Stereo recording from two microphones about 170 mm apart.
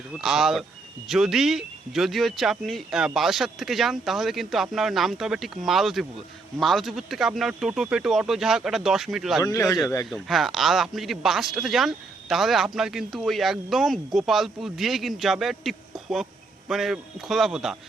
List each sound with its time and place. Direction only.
0.2 s speech: 5° right (ahead or behind)
9.4 s speech: 20° left (ahead or behind)
10.1 s speech: centre (ahead or behind)